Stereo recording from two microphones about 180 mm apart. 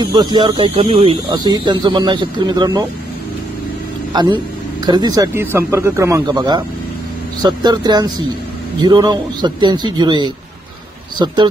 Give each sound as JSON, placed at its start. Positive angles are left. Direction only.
{"t": 0.0, "sound": "speech", "side_deg": -25}
{"t": 4.1, "sound": "a man's voice", "side_deg": -25}